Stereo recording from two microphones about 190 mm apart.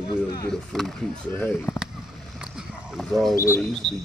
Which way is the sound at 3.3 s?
15° left (ahead or behind).